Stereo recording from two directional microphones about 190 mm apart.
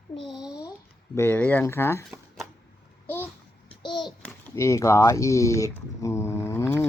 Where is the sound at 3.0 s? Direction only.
10° left (ahead or behind).